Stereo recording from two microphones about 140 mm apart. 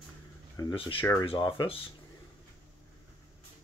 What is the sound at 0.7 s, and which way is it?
Speech, 40° left (ahead or behind).